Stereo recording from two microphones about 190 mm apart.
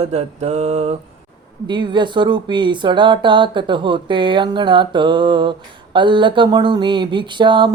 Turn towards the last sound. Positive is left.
turn(degrees=-25)  # may be behind; listen again after turning